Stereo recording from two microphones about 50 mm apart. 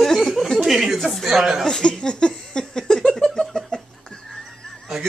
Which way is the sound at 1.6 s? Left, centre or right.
Centre.